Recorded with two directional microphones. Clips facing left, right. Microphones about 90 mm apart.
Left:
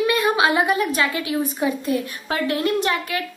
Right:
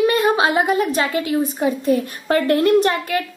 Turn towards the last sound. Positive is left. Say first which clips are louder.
# right 6 dB
turn(degrees=-40)  # may be behind; listen again after turning